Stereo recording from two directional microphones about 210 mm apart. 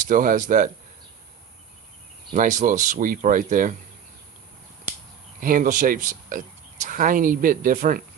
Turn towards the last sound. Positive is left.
turn(degrees=-40)  # may be behind; listen again after turning